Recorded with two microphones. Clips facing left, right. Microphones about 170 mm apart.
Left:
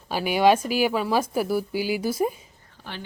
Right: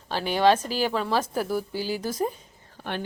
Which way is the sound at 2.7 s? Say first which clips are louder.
Right 6 dB; 55° right (ahead or behind).